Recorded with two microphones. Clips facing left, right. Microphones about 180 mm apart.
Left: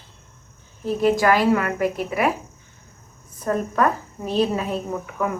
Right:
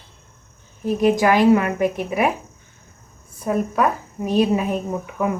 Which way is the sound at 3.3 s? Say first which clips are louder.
Right 1 dB; 10° right (ahead or behind).